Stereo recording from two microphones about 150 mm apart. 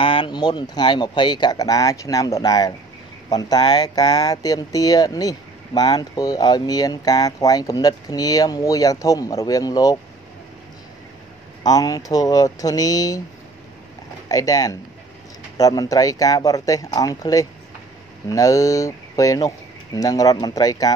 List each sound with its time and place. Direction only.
0.0 s speech: 30° left (ahead or behind)
11.6 s speech: 25° left (ahead or behind)
14.3 s speech: 25° left (ahead or behind)